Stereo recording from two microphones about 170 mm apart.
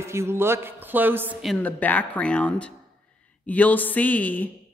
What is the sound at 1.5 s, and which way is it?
Speech, 10° left (ahead or behind).